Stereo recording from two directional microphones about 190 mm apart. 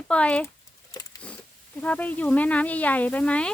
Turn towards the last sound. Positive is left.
turn(degrees=5)  # may be behind; listen again after turning